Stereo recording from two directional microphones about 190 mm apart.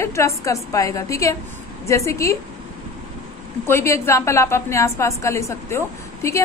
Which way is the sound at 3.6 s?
15° left (ahead or behind).